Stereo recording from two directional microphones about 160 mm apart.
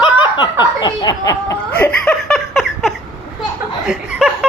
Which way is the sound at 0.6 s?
25° left (ahead or behind).